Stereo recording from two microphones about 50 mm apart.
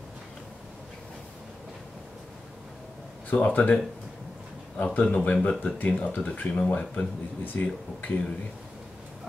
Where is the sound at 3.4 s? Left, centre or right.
Left.